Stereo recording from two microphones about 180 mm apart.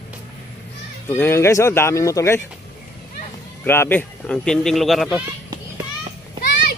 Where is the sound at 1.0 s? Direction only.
10° left (ahead or behind).